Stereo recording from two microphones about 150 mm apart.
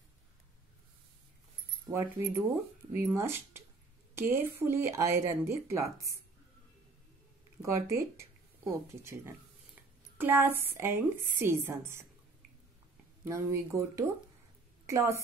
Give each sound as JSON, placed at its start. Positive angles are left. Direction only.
{"t": 1.9, "sound": "speech", "side_deg": -20}
{"t": 7.6, "sound": "speech", "side_deg": -20}
{"t": 13.2, "sound": "speech", "side_deg": -20}